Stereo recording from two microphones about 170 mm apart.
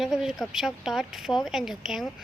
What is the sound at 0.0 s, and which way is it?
Speech, 5° right (ahead or behind).